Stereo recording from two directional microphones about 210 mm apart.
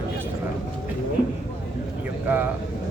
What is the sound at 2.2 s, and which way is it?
Speech, 10° right (ahead or behind).